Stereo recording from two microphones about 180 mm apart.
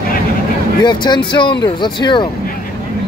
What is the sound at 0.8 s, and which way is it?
Speech, 25° left (ahead or behind).